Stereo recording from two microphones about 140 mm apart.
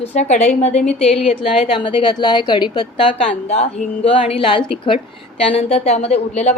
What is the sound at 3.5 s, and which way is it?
A woman's voice, 50° left (ahead or behind).